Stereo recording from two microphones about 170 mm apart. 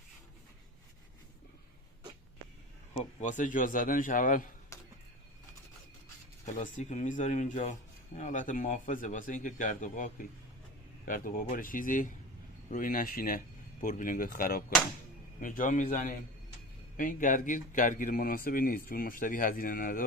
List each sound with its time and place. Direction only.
2.9 s speech: 45° left (ahead or behind)
4.7 s a sound: 20° left (ahead or behind)
6.4 s a man's voice: 45° left (ahead or behind)